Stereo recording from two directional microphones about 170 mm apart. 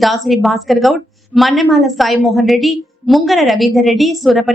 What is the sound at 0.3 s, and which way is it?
A woman's voice, centre (ahead or behind).